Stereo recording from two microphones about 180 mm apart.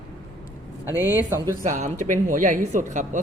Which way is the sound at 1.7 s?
45° right (ahead or behind).